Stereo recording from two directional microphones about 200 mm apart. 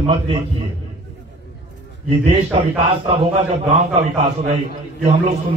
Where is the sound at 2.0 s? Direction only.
30° right (ahead or behind).